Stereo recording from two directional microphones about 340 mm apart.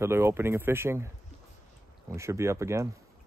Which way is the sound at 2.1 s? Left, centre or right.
Centre.